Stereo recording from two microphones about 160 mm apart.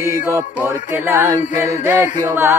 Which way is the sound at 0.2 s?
15° right (ahead or behind).